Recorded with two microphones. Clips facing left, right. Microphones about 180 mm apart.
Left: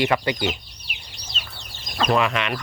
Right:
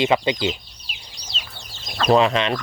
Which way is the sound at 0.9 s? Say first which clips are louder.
Even; 60° left (ahead or behind).